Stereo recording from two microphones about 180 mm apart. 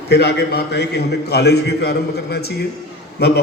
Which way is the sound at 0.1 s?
65° left (ahead or behind).